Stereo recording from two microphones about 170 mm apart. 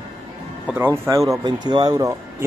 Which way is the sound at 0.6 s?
10° right (ahead or behind).